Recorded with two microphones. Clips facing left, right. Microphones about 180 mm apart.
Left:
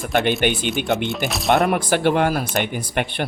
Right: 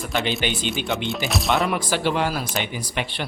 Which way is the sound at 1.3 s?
Centre (ahead or behind).